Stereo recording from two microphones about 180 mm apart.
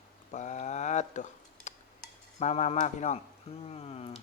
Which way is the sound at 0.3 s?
40° left (ahead or behind).